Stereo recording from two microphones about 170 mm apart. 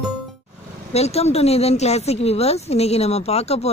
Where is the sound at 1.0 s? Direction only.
40° left (ahead or behind).